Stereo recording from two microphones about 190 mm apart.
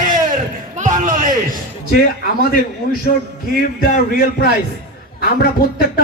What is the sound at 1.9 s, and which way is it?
A man's voice, 50° left (ahead or behind).